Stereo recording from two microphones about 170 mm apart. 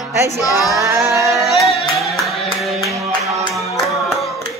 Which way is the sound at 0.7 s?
20° right (ahead or behind).